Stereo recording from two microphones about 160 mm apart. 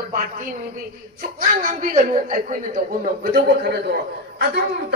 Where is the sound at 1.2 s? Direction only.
55° right (ahead or behind); by 4.6 s 85° right.